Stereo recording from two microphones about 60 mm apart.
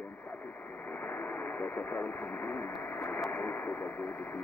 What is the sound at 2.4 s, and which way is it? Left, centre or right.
Speech, left.